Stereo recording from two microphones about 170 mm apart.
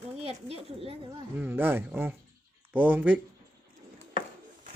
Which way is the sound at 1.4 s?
10° right (ahead or behind).